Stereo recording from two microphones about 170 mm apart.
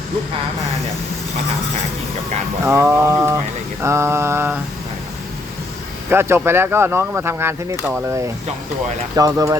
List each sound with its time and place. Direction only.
2.6 s speech: 15° right (ahead or behind)
3.8 s mantra: 15° right (ahead or behind)
6.1 s speech: 15° right (ahead or behind)